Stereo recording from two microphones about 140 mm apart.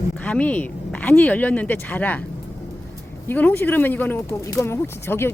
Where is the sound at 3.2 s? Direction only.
10° left (ahead or behind).